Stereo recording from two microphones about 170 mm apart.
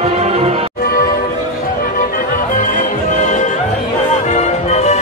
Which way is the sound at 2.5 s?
50° left (ahead or behind).